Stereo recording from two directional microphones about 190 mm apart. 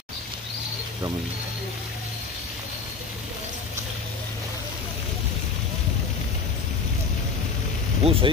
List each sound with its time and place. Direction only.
8.0 s speech: 30° right (ahead or behind)